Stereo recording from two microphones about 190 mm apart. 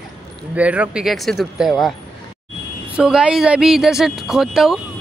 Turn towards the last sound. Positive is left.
turn(degrees=0)  # may be behind; listen again after turning